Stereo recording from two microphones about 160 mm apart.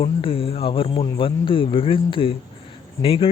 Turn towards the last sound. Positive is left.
turn(degrees=35)  # may be behind; listen again after turning